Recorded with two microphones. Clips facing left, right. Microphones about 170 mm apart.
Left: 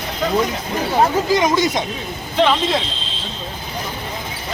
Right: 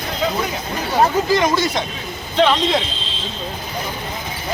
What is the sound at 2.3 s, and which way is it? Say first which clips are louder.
Speech: right 1 dB; centre (ahead or behind).